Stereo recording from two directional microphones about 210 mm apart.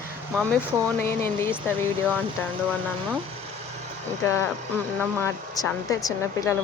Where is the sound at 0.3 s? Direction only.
5° left (ahead or behind).